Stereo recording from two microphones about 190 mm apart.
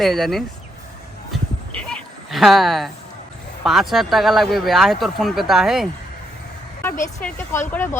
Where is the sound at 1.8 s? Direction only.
5° left (ahead or behind).